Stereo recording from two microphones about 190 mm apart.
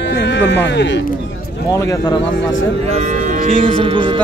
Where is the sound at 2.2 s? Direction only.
80° left.